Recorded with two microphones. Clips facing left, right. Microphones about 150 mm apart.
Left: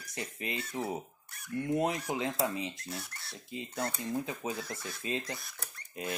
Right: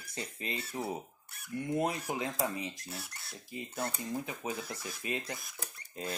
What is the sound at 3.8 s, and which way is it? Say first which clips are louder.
Speech: left 2 dB; 20° right (ahead or behind).